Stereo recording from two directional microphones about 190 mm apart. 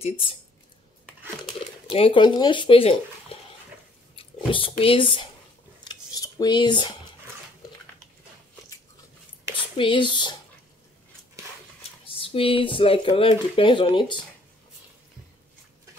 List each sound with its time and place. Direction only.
1.9 s speech: 30° left (ahead or behind)
4.2 s speech: 30° left (ahead or behind)
5.9 s cutlery: 20° left (ahead or behind)
9.8 s speech: 25° left (ahead or behind)
12.1 s speech: 30° left (ahead or behind)